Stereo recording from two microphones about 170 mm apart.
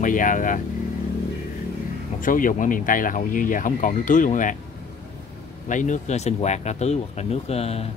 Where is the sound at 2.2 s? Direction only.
50° left (ahead or behind).